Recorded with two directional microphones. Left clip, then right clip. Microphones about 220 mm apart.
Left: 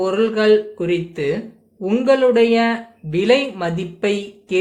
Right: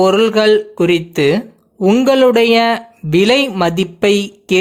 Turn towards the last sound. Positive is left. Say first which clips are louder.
# right 7 dB
turn(degrees=-50)  # may be behind; listen again after turning